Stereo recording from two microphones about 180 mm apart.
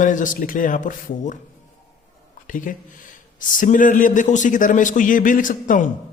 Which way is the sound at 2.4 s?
45° left (ahead or behind).